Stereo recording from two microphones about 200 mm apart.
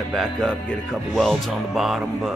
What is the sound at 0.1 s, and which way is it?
Speech, centre (ahead or behind).